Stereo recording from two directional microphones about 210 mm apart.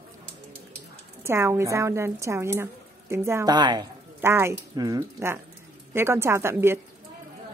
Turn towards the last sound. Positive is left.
turn(degrees=-10)  # may be behind; listen again after turning